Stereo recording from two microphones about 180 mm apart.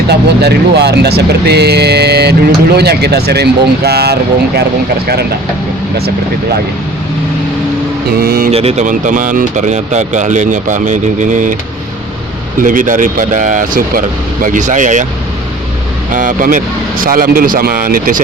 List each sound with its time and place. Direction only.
0.1 s speech: 65° right (ahead or behind)
8.2 s speech: 60° right (ahead or behind)
8.5 s speech: 35° right (ahead or behind)
12.6 s speech: 50° right (ahead or behind)
16.1 s speech: 50° right (ahead or behind)